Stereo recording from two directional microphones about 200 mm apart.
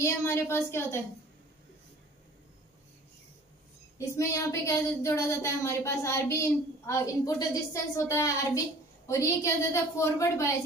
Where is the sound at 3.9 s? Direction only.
15° left (ahead or behind).